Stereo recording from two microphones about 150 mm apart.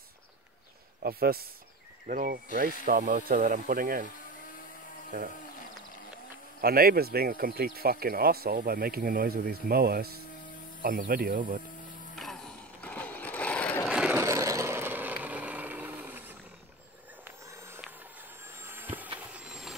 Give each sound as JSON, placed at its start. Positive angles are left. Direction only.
{"t": 1.0, "sound": "speech", "side_deg": -90}
{"t": 2.0, "sound": "speech", "side_deg": -65}
{"t": 6.6, "sound": "speech", "side_deg": -85}
{"t": 10.8, "sound": "speech", "side_deg": -75}
{"t": 12.2, "sound": "sewing machine", "side_deg": 0}
{"t": 14.1, "sound": "vehicle", "side_deg": -20}
{"t": 17.5, "sound": "a sound", "side_deg": -20}
{"t": 18.5, "sound": "vehicle", "side_deg": -15}